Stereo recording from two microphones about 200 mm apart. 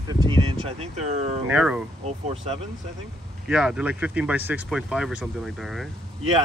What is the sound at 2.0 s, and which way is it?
Speech, 30° right (ahead or behind).